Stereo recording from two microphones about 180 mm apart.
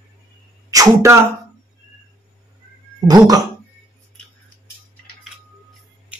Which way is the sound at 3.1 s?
20° right (ahead or behind).